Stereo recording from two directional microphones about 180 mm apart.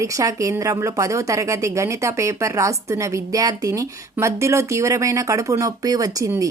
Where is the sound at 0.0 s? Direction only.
15° right (ahead or behind).